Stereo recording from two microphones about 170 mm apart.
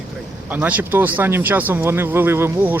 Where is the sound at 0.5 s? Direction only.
10° right (ahead or behind).